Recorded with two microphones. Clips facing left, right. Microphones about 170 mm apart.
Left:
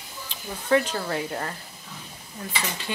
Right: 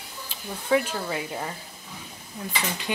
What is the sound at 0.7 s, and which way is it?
Speech, 5° right (ahead or behind).